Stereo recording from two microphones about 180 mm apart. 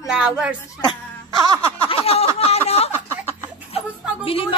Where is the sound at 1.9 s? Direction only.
30° left (ahead or behind).